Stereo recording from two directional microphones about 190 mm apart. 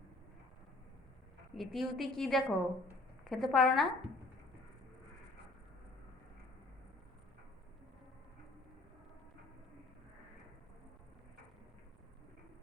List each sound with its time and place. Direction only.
1.5 s a woman's voice: centre (ahead or behind)